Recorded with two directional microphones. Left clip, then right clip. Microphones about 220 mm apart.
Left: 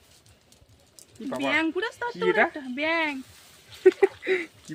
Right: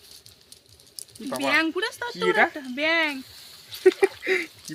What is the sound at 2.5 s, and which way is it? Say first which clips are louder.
Speech: right 3 dB; 10° left (ahead or behind).